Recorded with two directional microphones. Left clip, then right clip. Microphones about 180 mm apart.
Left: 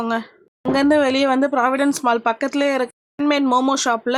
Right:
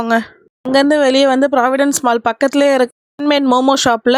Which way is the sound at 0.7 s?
40° right (ahead or behind).